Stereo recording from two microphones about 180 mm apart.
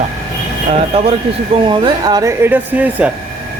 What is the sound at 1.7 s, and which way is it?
Speech, 25° right (ahead or behind).